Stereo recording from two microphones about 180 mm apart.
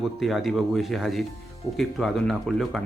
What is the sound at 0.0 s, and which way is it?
Speech, centre (ahead or behind).